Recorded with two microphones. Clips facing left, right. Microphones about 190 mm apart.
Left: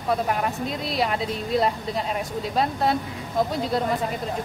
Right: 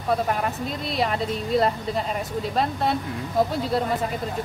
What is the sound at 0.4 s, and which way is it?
Speech, centre (ahead or behind).